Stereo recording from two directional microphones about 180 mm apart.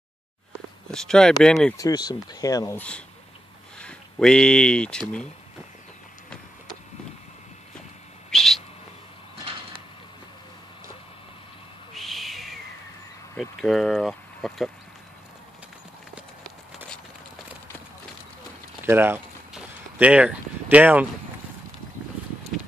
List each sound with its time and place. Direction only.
0.9 s speech: 5° left (ahead or behind)
1.8 s speech: 20° left (ahead or behind)
3.8 s speech: 5° left (ahead or behind)
8.3 s bird: centre (ahead or behind)
11.9 s owl: centre (ahead or behind)
13.4 s speech: centre (ahead or behind)
16.2 s clip-clop: centre (ahead or behind)
18.9 s a sound: 15° right (ahead or behind)